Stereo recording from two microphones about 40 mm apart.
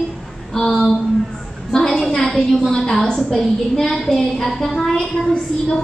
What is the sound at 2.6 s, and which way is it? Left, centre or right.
A woman's voice, centre.